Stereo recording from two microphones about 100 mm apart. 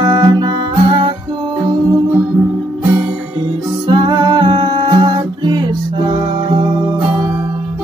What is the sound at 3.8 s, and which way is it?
Music, 50° right (ahead or behind).